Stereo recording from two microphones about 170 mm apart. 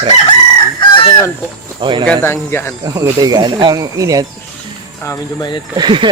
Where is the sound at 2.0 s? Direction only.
10° left (ahead or behind).